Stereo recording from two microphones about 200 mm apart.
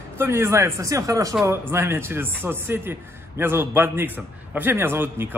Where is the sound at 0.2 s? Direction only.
10° right (ahead or behind).